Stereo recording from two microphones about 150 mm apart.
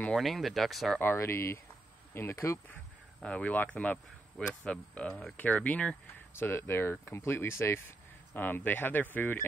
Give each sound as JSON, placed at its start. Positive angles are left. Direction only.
{"t": 0.0, "sound": "speech", "side_deg": 5}
{"t": 1.0, "sound": "speech", "side_deg": 15}
{"t": 3.2, "sound": "speech", "side_deg": 5}